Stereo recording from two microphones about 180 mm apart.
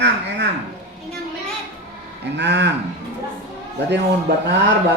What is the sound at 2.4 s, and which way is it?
Speech, 70° right (ahead or behind).